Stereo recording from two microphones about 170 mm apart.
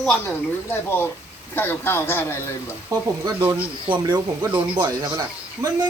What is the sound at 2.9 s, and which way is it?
Speech, 20° right (ahead or behind).